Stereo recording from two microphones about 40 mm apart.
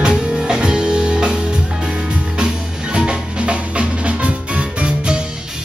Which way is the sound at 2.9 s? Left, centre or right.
Right.